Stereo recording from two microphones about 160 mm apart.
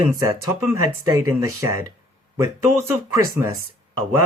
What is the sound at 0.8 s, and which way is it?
Speech, 20° right (ahead or behind).